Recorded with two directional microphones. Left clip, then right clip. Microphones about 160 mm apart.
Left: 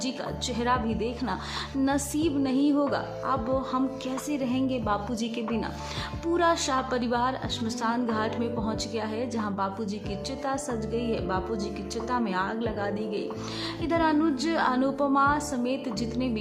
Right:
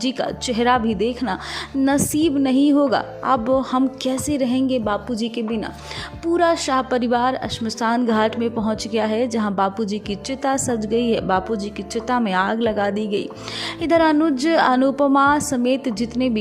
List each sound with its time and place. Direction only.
0.0 s a woman's voice: 45° right (ahead or behind)